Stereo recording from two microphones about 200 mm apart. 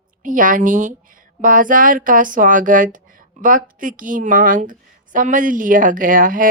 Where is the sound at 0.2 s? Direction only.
40° right (ahead or behind).